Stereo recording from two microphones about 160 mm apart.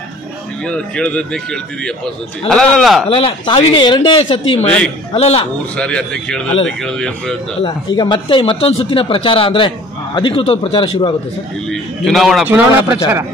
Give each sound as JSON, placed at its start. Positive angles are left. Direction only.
{"t": 0.7, "sound": "a man's voice", "side_deg": 5}
{"t": 3.1, "sound": "speech", "side_deg": 35}
{"t": 4.6, "sound": "a man's voice", "side_deg": 5}
{"t": 5.1, "sound": "speech", "side_deg": 40}
{"t": 5.8, "sound": "a man's voice", "side_deg": 5}
{"t": 7.6, "sound": "speech", "side_deg": 30}
{"t": 11.7, "sound": "a man's voice", "side_deg": 0}
{"t": 12.4, "sound": "speech", "side_deg": -10}